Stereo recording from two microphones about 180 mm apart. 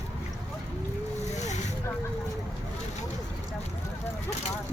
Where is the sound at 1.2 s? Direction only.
40° left (ahead or behind).